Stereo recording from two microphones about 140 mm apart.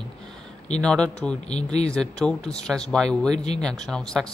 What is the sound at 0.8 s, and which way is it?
Speech, 5° left (ahead or behind).